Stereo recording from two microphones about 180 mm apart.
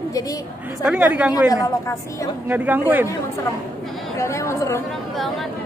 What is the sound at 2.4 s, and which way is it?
Speech, 10° right (ahead or behind).